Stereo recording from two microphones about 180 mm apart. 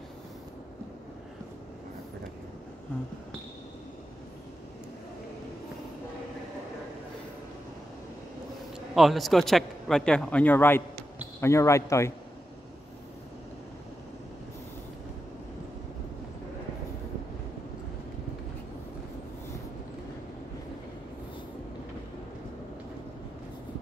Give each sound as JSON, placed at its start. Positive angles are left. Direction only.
{"t": 8.9, "sound": "a man's voice", "side_deg": 0}